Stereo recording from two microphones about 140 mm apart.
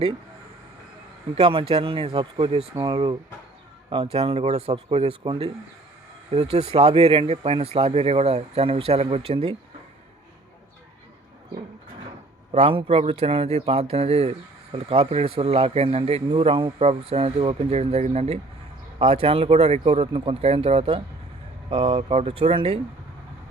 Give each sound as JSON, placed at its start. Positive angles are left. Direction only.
{"t": 1.4, "sound": "speech", "side_deg": -40}
{"t": 2.7, "sound": "speech", "side_deg": -25}
{"t": 3.8, "sound": "speech", "side_deg": -40}
{"t": 12.5, "sound": "speech", "side_deg": -40}
{"t": 21.7, "sound": "speech", "side_deg": -35}
{"t": 22.1, "sound": "speech", "side_deg": -45}